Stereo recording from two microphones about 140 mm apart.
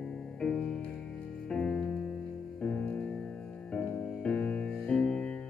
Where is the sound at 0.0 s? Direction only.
5° left (ahead or behind).